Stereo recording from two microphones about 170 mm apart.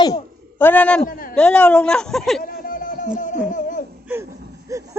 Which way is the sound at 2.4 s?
60° left (ahead or behind).